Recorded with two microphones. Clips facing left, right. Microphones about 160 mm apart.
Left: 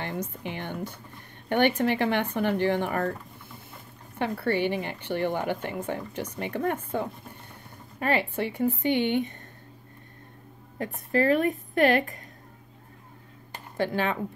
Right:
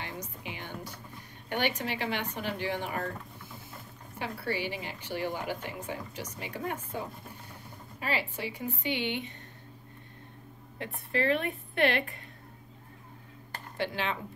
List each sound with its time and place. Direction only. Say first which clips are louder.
0.0 s speech: left 7 dB; 55° left (ahead or behind)
4.2 s a woman's voice: left 8 dB; 55° left (ahead or behind)
10.8 s a woman's voice: left 6 dB; 40° left (ahead or behind)
13.7 s a woman's voice: left 6 dB; 45° left (ahead or behind)